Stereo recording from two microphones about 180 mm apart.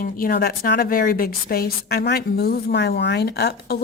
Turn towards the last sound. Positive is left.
turn(degrees=65)  # may be behind; listen again after turning